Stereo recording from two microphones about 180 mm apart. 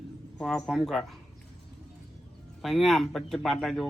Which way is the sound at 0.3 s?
Centre (ahead or behind).